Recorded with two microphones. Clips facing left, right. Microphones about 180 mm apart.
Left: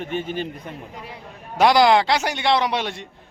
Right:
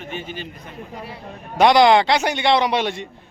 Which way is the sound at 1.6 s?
5° left (ahead or behind).